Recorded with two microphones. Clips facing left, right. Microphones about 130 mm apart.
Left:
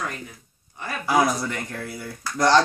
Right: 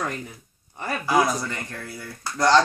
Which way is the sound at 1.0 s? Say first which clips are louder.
Left 1 dB; 10° left (ahead or behind).